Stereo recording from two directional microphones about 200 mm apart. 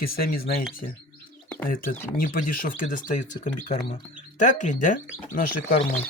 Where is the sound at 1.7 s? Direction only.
45° left (ahead or behind).